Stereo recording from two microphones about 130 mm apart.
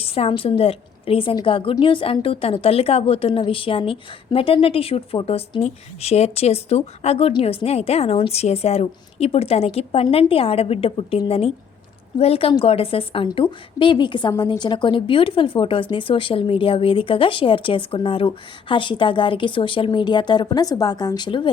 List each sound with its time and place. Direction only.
0.0 s a woman's voice: 50° left (ahead or behind)